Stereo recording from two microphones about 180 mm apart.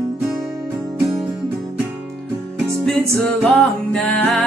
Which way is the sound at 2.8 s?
Centre (ahead or behind).